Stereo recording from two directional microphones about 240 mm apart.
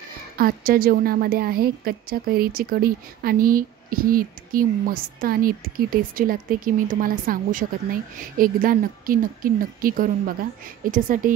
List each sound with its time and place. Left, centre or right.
0.4 s a woman's voice: right